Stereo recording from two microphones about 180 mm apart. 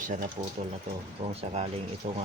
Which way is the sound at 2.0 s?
35° right (ahead or behind).